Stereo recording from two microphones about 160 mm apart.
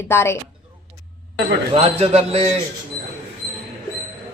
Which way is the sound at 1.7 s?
40° right (ahead or behind).